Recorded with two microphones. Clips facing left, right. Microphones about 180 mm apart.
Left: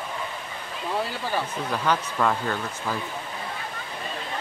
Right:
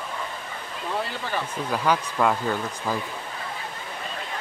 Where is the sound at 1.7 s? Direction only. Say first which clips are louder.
Right 2 dB; 10° right (ahead or behind).